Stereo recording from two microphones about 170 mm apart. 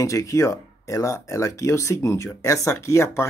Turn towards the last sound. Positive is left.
turn(degrees=15)  # may be behind; listen again after turning